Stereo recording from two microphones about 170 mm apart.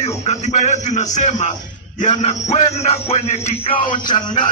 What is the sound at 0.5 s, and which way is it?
A man's voice, 45° left (ahead or behind).